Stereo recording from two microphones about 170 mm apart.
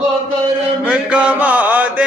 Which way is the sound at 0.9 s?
5° right (ahead or behind).